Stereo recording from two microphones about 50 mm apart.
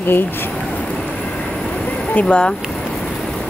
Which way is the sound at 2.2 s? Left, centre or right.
Centre.